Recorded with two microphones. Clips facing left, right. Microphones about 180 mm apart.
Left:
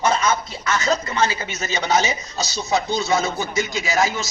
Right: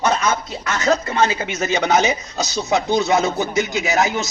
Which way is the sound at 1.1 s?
60° right (ahead or behind).